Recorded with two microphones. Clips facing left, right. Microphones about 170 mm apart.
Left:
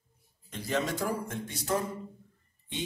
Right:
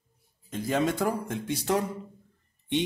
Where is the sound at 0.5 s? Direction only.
50° right (ahead or behind).